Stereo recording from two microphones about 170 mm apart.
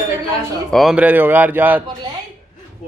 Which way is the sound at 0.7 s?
Centre (ahead or behind).